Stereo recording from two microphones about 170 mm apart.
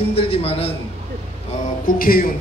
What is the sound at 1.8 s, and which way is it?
Speech, 55° left (ahead or behind).